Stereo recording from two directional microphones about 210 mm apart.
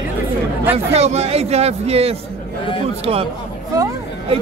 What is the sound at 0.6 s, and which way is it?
A man's voice, 30° right (ahead or behind).